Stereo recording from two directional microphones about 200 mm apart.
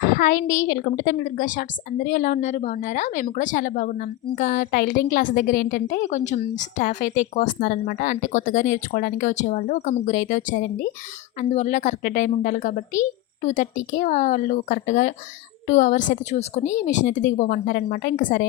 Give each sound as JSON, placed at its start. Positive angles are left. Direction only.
{"t": 0.0, "sound": "a woman's voice", "side_deg": 40}